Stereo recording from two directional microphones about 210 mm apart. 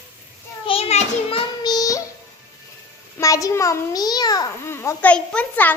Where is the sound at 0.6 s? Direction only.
25° left (ahead or behind).